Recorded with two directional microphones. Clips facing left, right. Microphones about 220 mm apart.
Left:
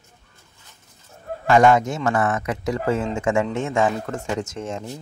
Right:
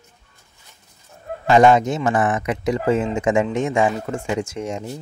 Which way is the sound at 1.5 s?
20° right (ahead or behind).